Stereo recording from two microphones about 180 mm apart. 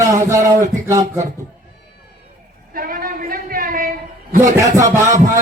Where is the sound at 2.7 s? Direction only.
50° right (ahead or behind).